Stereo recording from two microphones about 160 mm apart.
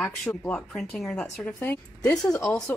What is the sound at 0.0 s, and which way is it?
A woman's voice, 5° left (ahead or behind).